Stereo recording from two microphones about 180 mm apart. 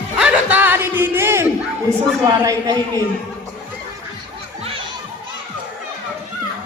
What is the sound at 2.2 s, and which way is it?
Speech, 20° right (ahead or behind).